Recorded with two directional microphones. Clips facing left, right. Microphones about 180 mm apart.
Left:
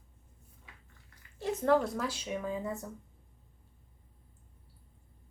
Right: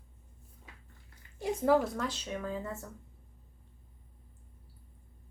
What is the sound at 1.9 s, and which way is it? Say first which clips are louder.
Speech: left 1 dB; 5° left (ahead or behind).